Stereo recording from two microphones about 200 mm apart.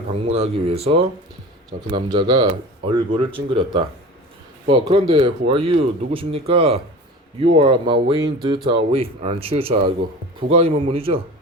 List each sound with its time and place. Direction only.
0.1 s speech: 30° right (ahead or behind)